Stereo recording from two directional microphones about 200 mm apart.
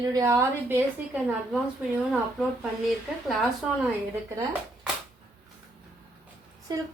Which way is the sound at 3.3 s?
Centre (ahead or behind).